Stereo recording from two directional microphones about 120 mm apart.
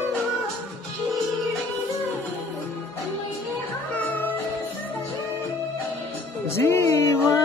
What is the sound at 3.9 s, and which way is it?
Music, 15° left (ahead or behind).